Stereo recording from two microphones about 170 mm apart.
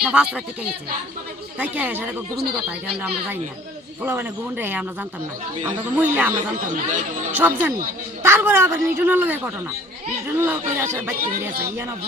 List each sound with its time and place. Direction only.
0.0 s speech: 5° right (ahead or behind)
1.5 s speech: 10° right (ahead or behind)
4.0 s speech: 10° right (ahead or behind)
6.0 s speech: 10° right (ahead or behind)
6.3 s speech: 50° right (ahead or behind)
7.3 s speech: 10° right (ahead or behind)